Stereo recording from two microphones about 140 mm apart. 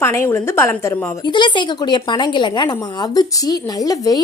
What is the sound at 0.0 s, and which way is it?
Speech, 20° left (ahead or behind).